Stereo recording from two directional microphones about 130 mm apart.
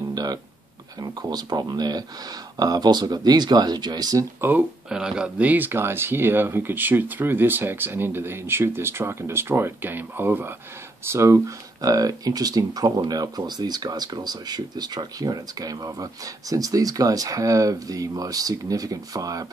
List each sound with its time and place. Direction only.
0.1 s a sound: 30° right (ahead or behind)
1.0 s speech: 30° right (ahead or behind)
4.5 s speech: 10° right (ahead or behind); by 19.4 s 25° right (ahead or behind)